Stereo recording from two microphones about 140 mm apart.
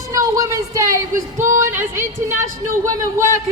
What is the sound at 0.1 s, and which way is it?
A woman's voice, 25° right (ahead or behind).